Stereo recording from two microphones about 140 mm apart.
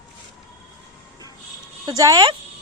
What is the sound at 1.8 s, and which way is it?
Speech, 25° right (ahead or behind).